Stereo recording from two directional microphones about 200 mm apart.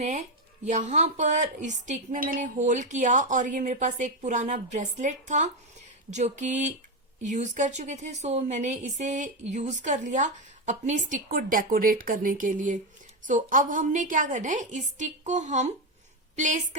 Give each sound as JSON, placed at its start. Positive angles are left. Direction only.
{"t": 0.0, "sound": "a woman's voice", "side_deg": -35}